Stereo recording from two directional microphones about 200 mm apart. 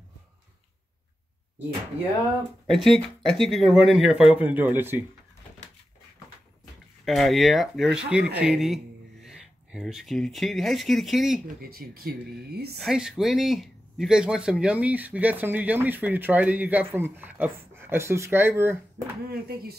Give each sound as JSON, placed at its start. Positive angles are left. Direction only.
{"t": 2.7, "sound": "speech", "side_deg": 0}
{"t": 7.1, "sound": "speech", "side_deg": 0}
{"t": 11.6, "sound": "speech", "side_deg": -50}
{"t": 12.7, "sound": "speech", "side_deg": 0}
{"t": 19.2, "sound": "speech", "side_deg": -50}